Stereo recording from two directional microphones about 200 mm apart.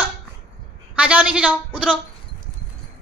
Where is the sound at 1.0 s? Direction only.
5° right (ahead or behind).